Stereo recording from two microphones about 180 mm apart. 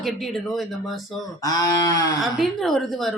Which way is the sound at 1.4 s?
20° left (ahead or behind).